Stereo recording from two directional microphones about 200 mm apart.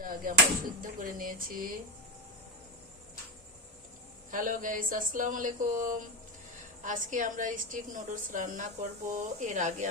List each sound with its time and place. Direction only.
0.0 s a sound: 45° right (ahead or behind)
0.8 s speech: 45° right (ahead or behind)
4.3 s a woman's voice: 40° right (ahead or behind)